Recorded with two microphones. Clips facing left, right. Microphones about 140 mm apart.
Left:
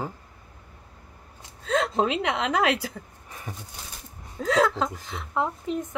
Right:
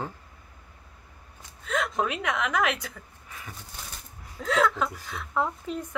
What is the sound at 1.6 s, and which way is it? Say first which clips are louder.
A woman's voice: left 4 dB; 30° left (ahead or behind).